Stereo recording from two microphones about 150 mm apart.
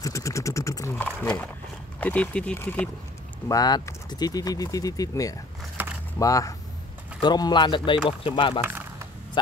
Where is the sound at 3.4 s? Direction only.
25° left (ahead or behind).